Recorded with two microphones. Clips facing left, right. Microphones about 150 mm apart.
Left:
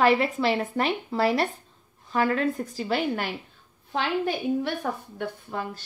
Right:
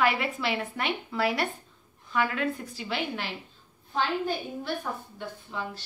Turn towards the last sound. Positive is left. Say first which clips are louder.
# left 3 dB
turn(degrees=50)  # may be behind; listen again after turning